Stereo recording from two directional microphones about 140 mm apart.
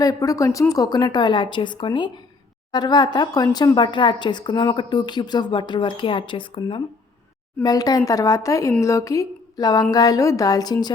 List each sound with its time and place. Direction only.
0.0 s speech: 25° left (ahead or behind)
7.6 s speech: 25° left (ahead or behind)